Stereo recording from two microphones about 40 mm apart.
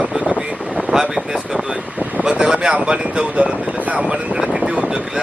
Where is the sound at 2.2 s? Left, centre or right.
Right.